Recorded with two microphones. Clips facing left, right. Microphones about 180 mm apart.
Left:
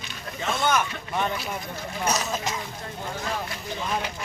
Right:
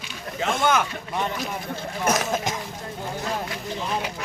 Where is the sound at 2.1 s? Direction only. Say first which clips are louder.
Right 4 dB; 50° right (ahead or behind).